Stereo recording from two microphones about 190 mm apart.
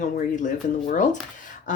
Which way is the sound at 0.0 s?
40° left (ahead or behind).